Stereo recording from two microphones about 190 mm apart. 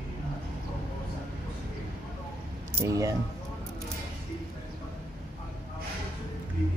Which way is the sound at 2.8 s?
15° right (ahead or behind).